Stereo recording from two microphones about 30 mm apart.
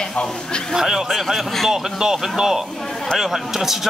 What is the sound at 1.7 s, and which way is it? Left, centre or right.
Speech, centre.